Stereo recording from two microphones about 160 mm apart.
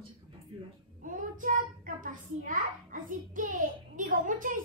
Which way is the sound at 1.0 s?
55° right (ahead or behind).